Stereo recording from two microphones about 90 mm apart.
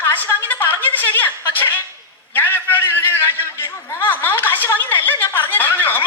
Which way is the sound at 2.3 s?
20° left (ahead or behind).